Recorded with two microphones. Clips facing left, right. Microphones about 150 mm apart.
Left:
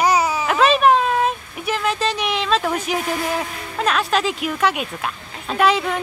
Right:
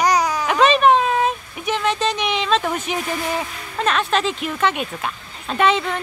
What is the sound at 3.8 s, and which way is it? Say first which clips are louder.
Speech: even; 5° left (ahead or behind).